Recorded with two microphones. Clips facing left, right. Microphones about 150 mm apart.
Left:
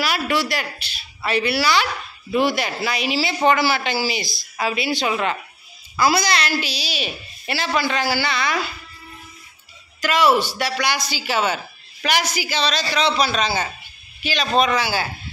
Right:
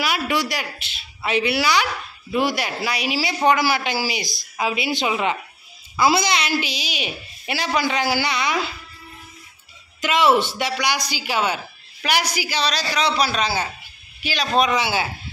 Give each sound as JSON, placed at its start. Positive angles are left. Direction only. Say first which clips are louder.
{"t": 0.0, "sound": "a woman's voice", "louder": "left 1 dB", "side_deg": -20}
{"t": 9.9, "sound": "speech", "louder": "even", "side_deg": -20}